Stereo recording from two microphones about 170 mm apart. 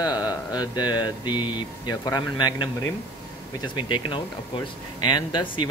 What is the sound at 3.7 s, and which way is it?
Speech, 30° left (ahead or behind).